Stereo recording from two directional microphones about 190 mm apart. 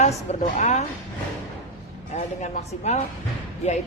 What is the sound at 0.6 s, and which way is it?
Speech, 40° left (ahead or behind).